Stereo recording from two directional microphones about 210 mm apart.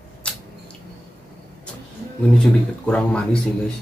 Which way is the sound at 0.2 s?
5° left (ahead or behind).